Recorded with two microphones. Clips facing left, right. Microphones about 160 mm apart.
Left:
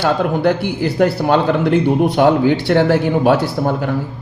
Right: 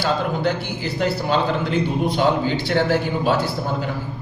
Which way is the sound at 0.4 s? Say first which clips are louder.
Left 7 dB; 55° left (ahead or behind).